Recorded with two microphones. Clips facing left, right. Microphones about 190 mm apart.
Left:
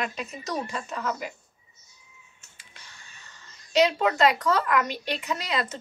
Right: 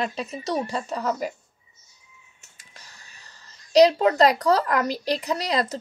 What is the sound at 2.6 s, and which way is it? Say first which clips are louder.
Speech: right 1 dB; 40° right (ahead or behind).